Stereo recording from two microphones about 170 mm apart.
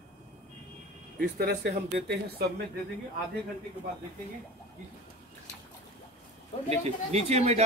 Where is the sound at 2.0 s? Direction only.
90° right.